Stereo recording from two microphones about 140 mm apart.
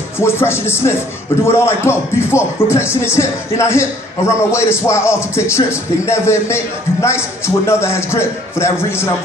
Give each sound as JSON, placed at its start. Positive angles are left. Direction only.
{"t": 0.2, "sound": "a man's voice", "side_deg": 15}